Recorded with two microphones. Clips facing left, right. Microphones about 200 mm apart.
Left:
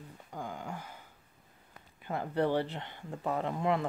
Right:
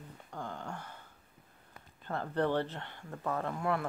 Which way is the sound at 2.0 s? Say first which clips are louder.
Left 1 dB; 10° left (ahead or behind).